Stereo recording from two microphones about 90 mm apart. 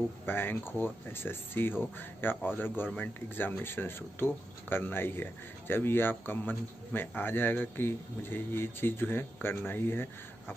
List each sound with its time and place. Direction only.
0.2 s speech: 25° left (ahead or behind)